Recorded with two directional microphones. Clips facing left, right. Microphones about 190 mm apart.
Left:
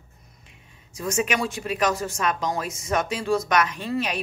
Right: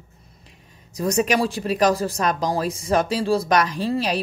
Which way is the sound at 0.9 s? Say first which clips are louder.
Right 5 dB; 40° right (ahead or behind).